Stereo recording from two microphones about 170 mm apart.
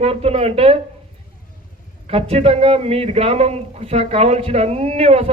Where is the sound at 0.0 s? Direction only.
35° right (ahead or behind).